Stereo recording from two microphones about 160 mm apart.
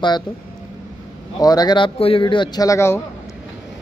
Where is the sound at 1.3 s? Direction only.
25° left (ahead or behind).